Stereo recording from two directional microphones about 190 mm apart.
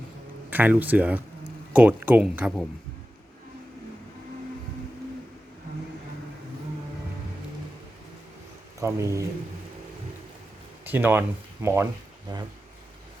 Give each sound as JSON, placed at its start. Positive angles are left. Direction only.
{"t": 0.5, "sound": "speech", "side_deg": -10}
{"t": 8.8, "sound": "speech", "side_deg": -15}
{"t": 10.8, "sound": "speech", "side_deg": -10}
{"t": 12.3, "sound": "speech", "side_deg": -20}